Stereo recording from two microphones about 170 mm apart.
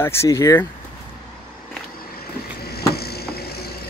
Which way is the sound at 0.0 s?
15° left (ahead or behind).